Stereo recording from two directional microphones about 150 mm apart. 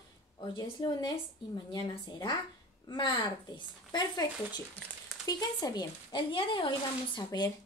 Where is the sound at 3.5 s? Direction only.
30° left (ahead or behind).